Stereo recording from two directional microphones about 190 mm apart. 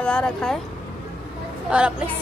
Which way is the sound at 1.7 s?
5° right (ahead or behind).